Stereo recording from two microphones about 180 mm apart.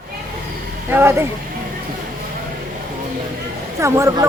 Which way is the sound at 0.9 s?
15° right (ahead or behind).